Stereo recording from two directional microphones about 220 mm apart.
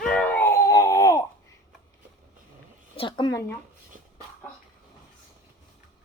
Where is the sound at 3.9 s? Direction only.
35° right (ahead or behind).